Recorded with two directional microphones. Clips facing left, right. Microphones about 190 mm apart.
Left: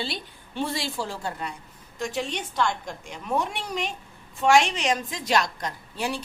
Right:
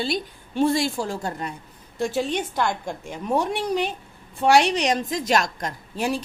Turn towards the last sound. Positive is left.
turn(degrees=-45)  # may be behind; listen again after turning